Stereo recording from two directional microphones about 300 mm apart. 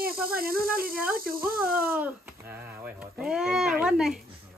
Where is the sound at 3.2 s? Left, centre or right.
Centre.